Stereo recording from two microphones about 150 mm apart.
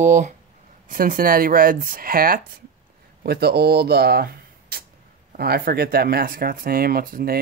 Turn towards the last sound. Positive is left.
turn(degrees=-75)  # may be behind; listen again after turning